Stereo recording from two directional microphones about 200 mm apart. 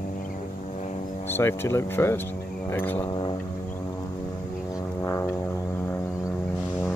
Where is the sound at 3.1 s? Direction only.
25° left (ahead or behind).